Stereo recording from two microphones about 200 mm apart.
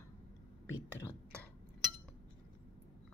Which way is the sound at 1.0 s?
10° left (ahead or behind).